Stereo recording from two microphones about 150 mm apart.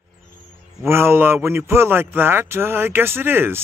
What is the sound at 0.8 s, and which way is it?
A man's voice, 15° right (ahead or behind).